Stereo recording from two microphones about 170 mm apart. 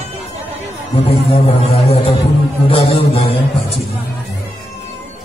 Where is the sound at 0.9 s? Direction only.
35° left (ahead or behind).